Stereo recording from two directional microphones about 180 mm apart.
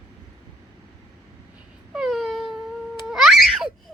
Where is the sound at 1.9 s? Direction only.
Centre (ahead or behind).